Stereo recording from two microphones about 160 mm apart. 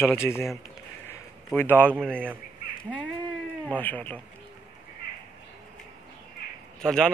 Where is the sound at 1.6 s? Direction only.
10° left (ahead or behind).